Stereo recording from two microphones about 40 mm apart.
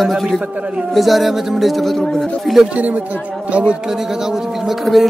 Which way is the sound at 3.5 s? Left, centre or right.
Right.